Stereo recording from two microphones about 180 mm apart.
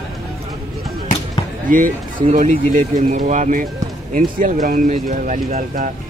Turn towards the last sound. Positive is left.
turn(degrees=-45)  # may be behind; listen again after turning